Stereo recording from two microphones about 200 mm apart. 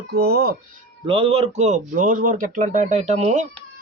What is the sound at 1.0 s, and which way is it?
Speech, 30° right (ahead or behind).